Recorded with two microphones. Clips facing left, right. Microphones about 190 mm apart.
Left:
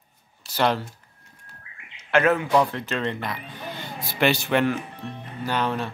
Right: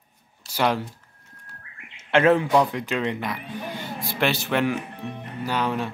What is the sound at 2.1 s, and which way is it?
Speech, 30° right (ahead or behind).